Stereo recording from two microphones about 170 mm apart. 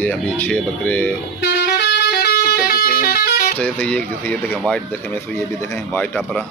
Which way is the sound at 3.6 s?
5° left (ahead or behind).